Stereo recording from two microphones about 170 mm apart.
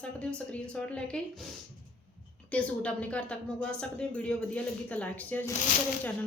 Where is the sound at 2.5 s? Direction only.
5° left (ahead or behind).